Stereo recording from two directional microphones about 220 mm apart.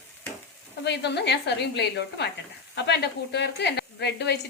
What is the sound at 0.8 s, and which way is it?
A woman's voice, 50° left (ahead or behind).